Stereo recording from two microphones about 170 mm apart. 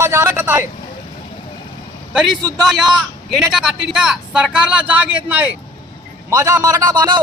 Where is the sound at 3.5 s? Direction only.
Centre (ahead or behind).